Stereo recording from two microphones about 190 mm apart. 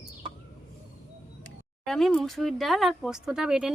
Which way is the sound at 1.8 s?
Centre (ahead or behind).